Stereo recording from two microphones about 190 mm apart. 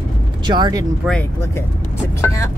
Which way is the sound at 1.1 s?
10° left (ahead or behind).